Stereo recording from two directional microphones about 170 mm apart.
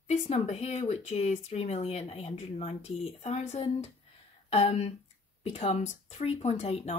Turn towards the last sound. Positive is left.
turn(degrees=40)  # may be behind; listen again after turning